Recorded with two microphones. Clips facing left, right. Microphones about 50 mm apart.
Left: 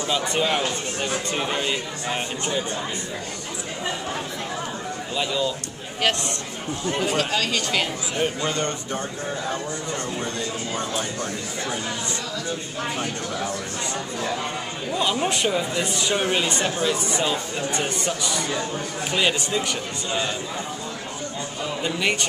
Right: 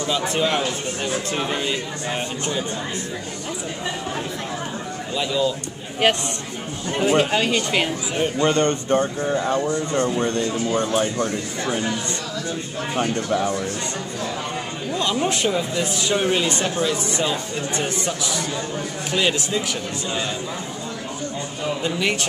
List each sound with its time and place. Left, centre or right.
0.2 s speech: centre
5.1 s speech: centre
6.0 s speech: right
6.9 s speech: centre
7.2 s speech: right
8.4 s speech: right
14.9 s speech: centre
21.8 s speech: centre